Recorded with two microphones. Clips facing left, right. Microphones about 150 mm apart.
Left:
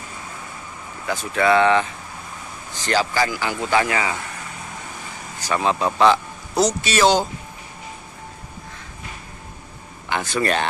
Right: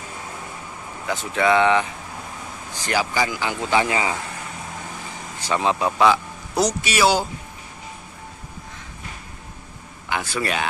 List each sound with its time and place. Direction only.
1.0 s speech: 20° right (ahead or behind)
5.4 s speech: 15° right (ahead or behind)
10.0 s speech: 10° right (ahead or behind)